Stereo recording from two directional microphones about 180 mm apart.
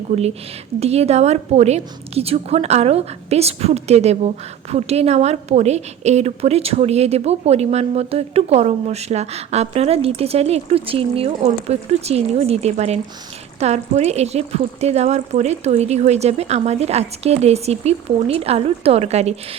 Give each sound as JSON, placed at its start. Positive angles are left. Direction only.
{"t": 0.1, "sound": "a woman's voice", "side_deg": -35}